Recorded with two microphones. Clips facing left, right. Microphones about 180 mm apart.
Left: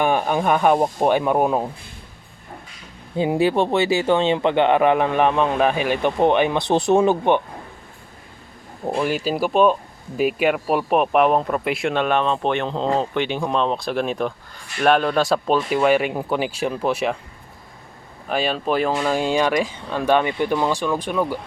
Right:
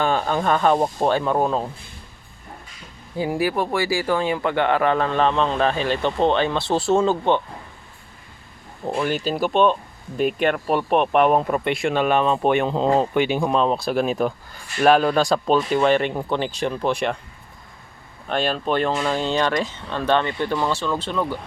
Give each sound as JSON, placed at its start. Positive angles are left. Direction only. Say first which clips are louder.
{"t": 0.0, "sound": "speech", "louder": "left 2 dB", "side_deg": 15}
{"t": 3.2, "sound": "speech", "louder": "left 4 dB", "side_deg": 25}
{"t": 8.8, "sound": "speech", "louder": "left 1 dB", "side_deg": 10}
{"t": 18.3, "sound": "speech", "louder": "left 1 dB", "side_deg": 5}